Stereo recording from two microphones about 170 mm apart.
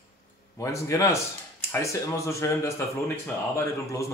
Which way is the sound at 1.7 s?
15° left (ahead or behind).